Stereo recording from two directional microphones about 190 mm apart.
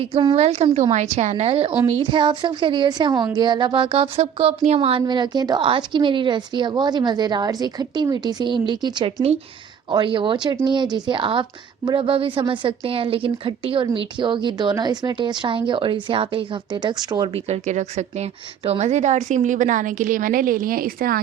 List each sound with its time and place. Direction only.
0.0 s a woman's voice: 30° right (ahead or behind); by 21.2 s 50° right (ahead or behind)